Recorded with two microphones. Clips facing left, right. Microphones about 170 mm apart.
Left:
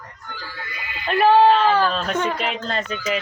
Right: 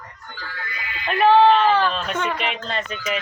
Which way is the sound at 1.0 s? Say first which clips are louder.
Even; 35° left (ahead or behind).